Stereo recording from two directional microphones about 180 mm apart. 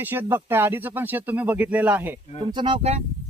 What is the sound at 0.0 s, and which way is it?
Speech, 10° right (ahead or behind).